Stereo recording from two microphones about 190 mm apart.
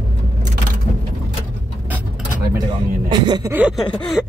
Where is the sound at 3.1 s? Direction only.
20° right (ahead or behind).